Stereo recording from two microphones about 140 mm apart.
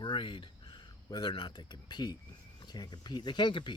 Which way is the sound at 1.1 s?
35° left (ahead or behind).